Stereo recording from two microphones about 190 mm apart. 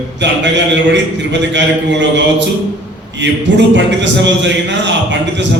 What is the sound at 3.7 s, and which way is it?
A man's voice, 70° right (ahead or behind).